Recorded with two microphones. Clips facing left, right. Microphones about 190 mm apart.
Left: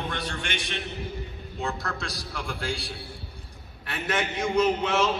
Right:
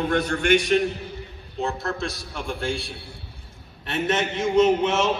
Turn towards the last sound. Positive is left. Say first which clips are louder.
# right 4 dB
turn(degrees=-20)  # may be behind; listen again after turning